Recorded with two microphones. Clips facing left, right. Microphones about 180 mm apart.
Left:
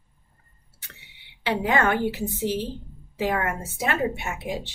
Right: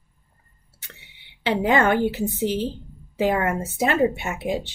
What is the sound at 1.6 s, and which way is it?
A woman's voice, 25° right (ahead or behind).